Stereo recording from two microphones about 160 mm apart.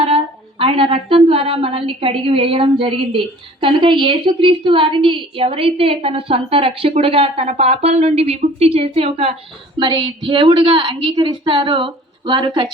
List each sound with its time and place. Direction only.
0.6 s a woman's voice: 35° right (ahead or behind)